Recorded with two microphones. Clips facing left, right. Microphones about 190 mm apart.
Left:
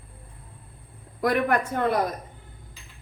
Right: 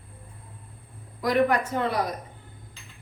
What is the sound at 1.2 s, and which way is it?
Speech, 55° left (ahead or behind).